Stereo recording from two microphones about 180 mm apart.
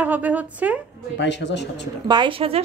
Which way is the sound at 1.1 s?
75° left (ahead or behind).